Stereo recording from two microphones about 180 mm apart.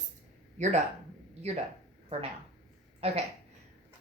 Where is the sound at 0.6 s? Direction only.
40° right (ahead or behind).